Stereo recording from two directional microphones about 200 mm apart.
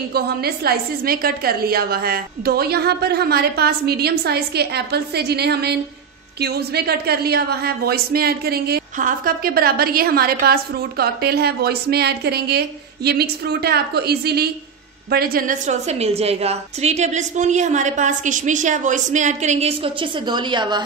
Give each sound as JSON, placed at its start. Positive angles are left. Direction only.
{"t": 0.1, "sound": "a woman's voice", "side_deg": -50}